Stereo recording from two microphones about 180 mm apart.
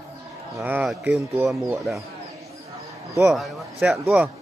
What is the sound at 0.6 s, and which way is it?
Speech, 5° right (ahead or behind).